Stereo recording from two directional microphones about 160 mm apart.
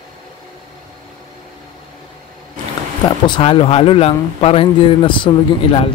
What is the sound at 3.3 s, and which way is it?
Speech, 35° left (ahead or behind).